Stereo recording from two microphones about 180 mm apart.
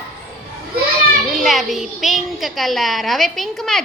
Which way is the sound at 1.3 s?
Centre (ahead or behind).